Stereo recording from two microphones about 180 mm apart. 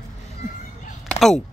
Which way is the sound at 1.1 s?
Centre (ahead or behind).